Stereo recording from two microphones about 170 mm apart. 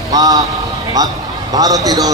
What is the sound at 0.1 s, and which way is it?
A man's voice, 20° right (ahead or behind).